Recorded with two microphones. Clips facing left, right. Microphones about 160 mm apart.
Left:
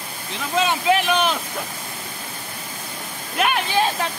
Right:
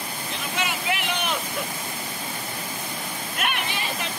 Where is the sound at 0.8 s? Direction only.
90° left.